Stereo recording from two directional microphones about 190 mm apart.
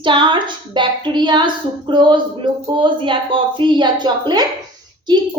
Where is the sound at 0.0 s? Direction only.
25° right (ahead or behind).